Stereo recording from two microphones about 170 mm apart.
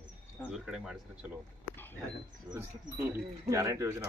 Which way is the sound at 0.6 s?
5° right (ahead or behind).